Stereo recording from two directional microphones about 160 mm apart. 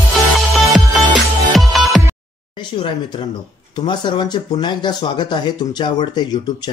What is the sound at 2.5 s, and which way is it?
Speech, 30° left (ahead or behind).